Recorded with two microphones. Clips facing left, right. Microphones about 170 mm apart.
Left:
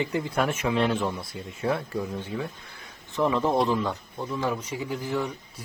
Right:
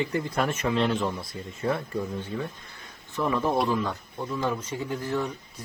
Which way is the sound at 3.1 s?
15° left (ahead or behind).